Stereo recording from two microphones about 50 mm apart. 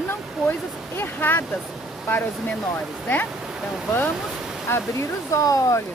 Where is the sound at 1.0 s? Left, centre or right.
Left.